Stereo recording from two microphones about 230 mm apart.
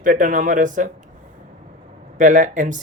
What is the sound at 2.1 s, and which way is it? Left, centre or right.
Speech, right.